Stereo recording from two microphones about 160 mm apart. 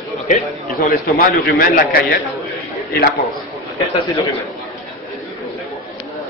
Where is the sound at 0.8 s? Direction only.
65° left (ahead or behind).